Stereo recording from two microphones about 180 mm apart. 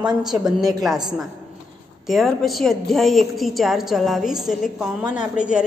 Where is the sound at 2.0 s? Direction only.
Centre (ahead or behind).